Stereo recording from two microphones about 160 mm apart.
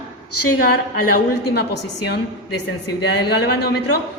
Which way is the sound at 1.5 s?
90° left.